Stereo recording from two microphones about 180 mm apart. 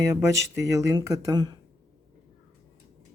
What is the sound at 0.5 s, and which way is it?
Speech, 20° right (ahead or behind).